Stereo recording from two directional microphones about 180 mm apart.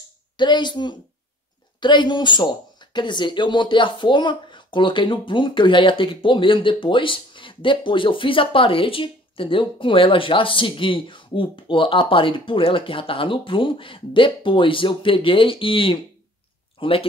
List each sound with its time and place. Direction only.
0.4 s speech: 25° left (ahead or behind)